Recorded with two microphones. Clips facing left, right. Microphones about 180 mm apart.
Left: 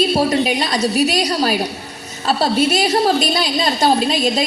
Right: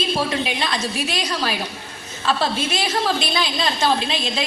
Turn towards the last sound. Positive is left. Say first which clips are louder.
# left 5 dB
turn(degrees=40)  # may be behind; listen again after turning